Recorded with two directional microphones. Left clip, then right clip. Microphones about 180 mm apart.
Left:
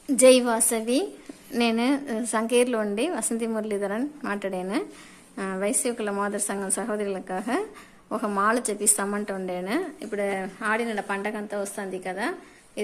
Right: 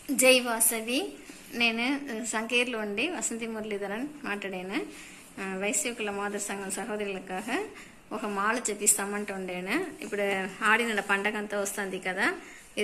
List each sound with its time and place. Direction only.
0.2 s a woman's voice: 60° left (ahead or behind); by 12.8 s 25° left (ahead or behind)